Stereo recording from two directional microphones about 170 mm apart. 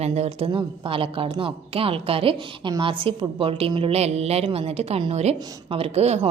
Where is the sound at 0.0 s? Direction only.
35° right (ahead or behind).